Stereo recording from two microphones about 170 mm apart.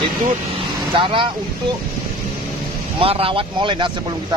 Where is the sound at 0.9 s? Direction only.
30° right (ahead or behind).